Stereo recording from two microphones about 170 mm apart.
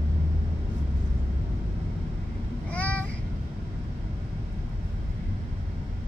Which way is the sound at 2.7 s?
10° left (ahead or behind).